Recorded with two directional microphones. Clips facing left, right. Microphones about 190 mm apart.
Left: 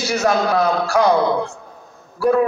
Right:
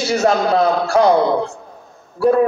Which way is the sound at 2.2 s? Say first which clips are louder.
Right 3 dB; 25° right (ahead or behind).